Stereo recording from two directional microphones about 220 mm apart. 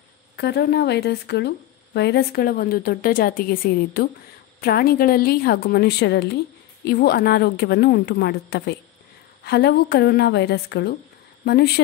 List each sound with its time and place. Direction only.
0.4 s a woman's voice: 50° left (ahead or behind)